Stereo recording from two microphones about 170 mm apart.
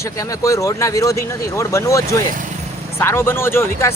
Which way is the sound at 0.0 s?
20° left (ahead or behind).